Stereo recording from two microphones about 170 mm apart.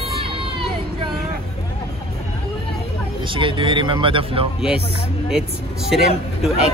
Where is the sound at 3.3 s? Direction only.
30° right (ahead or behind).